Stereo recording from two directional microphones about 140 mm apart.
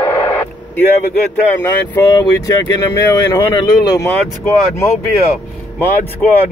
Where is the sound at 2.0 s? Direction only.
30° left (ahead or behind).